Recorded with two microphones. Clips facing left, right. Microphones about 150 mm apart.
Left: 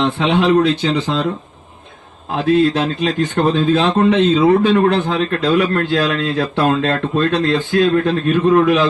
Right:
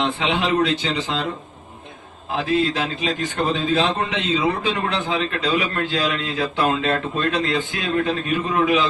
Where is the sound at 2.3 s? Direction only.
45° left (ahead or behind).